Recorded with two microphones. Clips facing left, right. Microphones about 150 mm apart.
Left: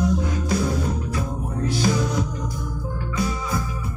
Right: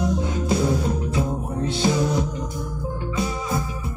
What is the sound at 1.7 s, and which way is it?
Music, 25° right (ahead or behind).